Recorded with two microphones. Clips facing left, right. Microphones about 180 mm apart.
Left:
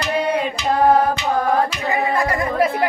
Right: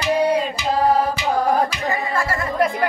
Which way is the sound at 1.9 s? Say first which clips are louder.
Left 3 dB; 20° left (ahead or behind).